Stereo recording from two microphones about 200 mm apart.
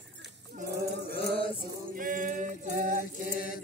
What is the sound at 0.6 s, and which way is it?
Chant, 50° right (ahead or behind).